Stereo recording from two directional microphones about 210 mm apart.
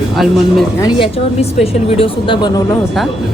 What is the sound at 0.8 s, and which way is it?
A woman's voice, 25° left (ahead or behind).